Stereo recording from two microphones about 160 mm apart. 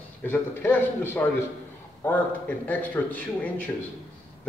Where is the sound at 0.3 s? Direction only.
10° left (ahead or behind).